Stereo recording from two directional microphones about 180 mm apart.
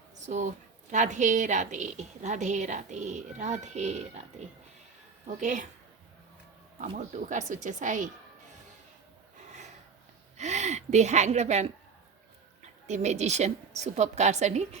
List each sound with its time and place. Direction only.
0.3 s a woman's voice: 40° right (ahead or behind)
6.7 s speech: 40° right (ahead or behind)
9.4 s gasp: 40° right (ahead or behind)
10.3 s a woman's voice: 40° right (ahead or behind)
12.9 s a woman's voice: 40° right (ahead or behind)